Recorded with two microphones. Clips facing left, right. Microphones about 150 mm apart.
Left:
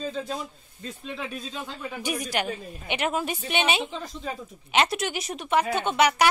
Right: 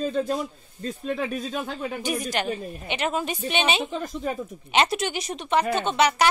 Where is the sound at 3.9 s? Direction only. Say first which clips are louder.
Right 5 dB; 50° right (ahead or behind).